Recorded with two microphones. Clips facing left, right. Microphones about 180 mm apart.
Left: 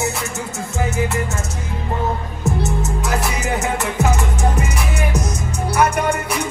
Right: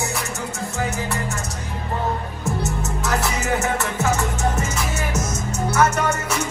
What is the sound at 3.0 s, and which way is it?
Music, 20° left (ahead or behind).